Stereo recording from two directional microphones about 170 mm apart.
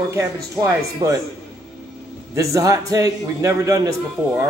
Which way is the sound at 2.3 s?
20° right (ahead or behind).